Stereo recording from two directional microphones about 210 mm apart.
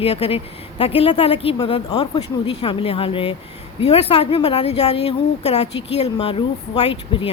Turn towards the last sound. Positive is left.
turn(degrees=25)  # may be behind; listen again after turning